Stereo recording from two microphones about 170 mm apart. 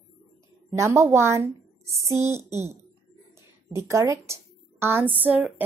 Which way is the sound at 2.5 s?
40° right (ahead or behind).